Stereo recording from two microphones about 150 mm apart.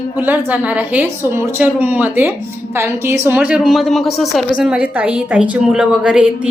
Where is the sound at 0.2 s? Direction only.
10° right (ahead or behind).